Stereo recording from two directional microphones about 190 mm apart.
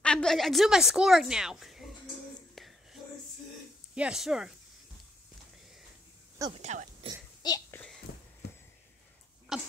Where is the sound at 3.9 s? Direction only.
5° right (ahead or behind).